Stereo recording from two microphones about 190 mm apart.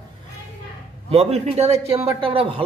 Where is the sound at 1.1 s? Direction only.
30° right (ahead or behind).